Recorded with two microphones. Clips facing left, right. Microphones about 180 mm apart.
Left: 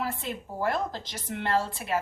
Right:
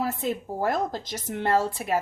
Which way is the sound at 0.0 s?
40° right (ahead or behind).